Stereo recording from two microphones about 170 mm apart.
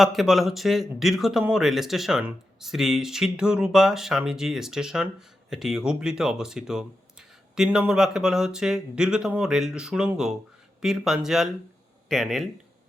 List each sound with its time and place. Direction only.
0.0 s speech: centre (ahead or behind)